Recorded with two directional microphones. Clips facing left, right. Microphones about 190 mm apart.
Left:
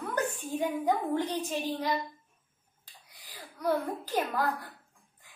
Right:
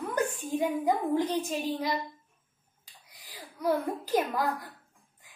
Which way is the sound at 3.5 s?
10° right (ahead or behind).